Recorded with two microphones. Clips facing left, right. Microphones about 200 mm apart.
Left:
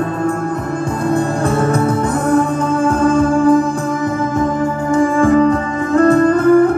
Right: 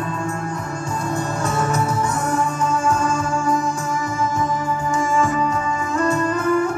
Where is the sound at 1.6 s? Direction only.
55° left (ahead or behind).